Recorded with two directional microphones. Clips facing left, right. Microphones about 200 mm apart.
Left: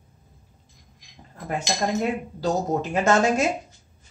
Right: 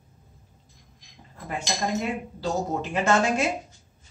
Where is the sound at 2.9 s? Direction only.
40° left (ahead or behind).